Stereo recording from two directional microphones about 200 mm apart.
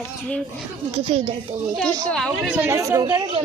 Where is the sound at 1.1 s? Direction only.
30° right (ahead or behind).